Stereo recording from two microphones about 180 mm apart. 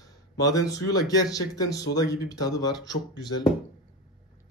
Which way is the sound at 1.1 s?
20° left (ahead or behind).